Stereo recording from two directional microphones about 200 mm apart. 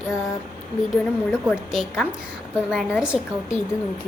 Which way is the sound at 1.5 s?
Centre (ahead or behind).